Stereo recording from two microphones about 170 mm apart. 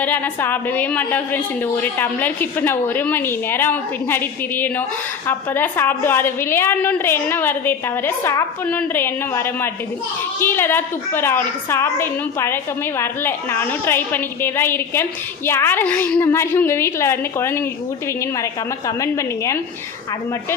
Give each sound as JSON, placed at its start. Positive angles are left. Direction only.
{"t": 0.0, "sound": "a woman's voice", "side_deg": 10}
{"t": 18.9, "sound": "a woman's voice", "side_deg": 15}